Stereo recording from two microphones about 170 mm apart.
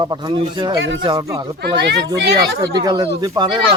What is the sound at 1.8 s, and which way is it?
Speech, 80° right.